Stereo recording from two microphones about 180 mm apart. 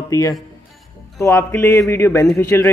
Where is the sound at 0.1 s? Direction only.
20° left (ahead or behind).